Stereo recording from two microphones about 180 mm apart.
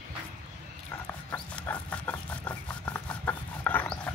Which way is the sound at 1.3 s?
10° left (ahead or behind).